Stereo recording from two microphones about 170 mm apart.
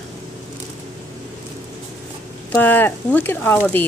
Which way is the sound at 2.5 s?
10° left (ahead or behind).